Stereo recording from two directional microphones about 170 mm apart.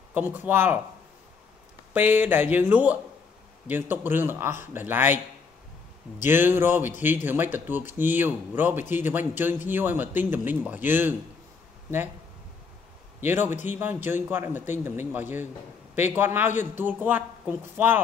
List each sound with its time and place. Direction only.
0.1 s speech: 10° right (ahead or behind)
2.0 s speech: 10° right (ahead or behind)
6.2 s speech: 15° right (ahead or behind)
13.2 s speech: 15° right (ahead or behind)